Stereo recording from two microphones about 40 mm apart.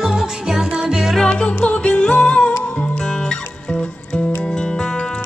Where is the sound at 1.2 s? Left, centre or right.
Left.